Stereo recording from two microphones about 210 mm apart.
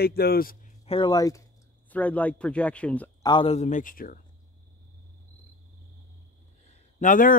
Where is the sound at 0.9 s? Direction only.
20° left (ahead or behind).